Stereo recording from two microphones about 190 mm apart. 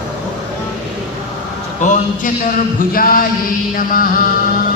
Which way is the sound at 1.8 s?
40° left (ahead or behind).